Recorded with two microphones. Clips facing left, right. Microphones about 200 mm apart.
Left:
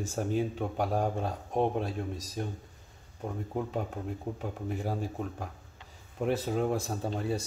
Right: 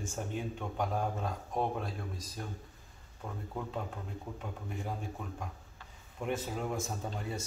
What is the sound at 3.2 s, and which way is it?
Speech, 30° left (ahead or behind).